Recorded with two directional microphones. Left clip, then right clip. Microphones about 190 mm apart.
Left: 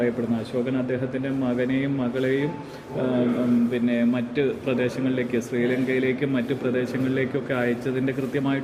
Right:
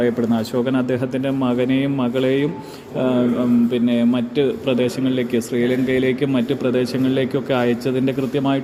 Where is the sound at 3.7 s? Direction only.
40° right (ahead or behind).